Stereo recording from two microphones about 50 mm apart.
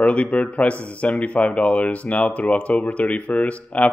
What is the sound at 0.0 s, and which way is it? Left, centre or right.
Speech, left.